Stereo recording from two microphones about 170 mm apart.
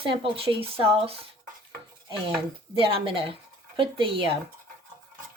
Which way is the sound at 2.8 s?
30° right (ahead or behind).